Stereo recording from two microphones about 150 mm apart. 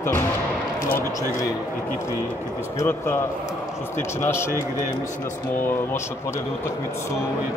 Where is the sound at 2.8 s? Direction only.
15° left (ahead or behind).